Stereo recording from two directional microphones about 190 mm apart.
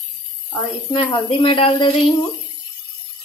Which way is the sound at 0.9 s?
25° left (ahead or behind).